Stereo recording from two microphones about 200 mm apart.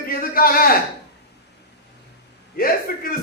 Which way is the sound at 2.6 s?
45° left (ahead or behind).